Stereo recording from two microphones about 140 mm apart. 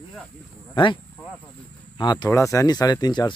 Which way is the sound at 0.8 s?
40° left (ahead or behind).